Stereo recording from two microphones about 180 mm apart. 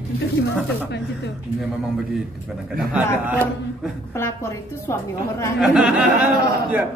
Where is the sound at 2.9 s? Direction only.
10° right (ahead or behind).